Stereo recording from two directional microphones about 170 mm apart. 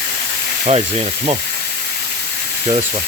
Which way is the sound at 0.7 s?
40° right (ahead or behind).